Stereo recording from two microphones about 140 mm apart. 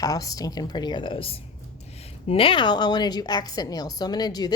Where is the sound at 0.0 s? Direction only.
25° left (ahead or behind).